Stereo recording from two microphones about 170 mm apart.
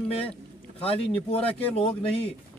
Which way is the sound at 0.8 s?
35° left (ahead or behind).